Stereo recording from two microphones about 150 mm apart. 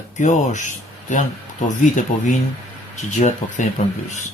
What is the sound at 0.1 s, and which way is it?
A man's voice, 55° left (ahead or behind).